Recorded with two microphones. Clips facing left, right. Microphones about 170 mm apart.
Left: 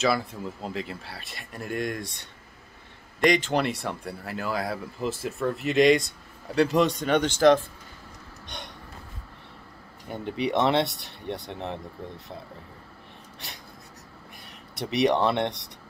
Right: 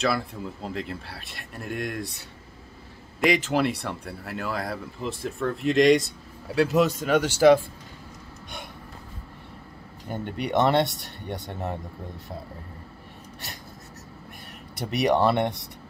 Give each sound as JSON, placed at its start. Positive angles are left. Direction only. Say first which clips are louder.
{"t": 0.0, "sound": "speech", "louder": "left 1 dB", "side_deg": 0}
{"t": 10.0, "sound": "speech", "louder": "left 2 dB", "side_deg": 0}
{"t": 14.8, "sound": "speech", "louder": "right 1 dB", "side_deg": 0}